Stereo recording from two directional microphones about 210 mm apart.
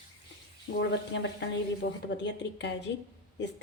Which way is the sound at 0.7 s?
55° left (ahead or behind).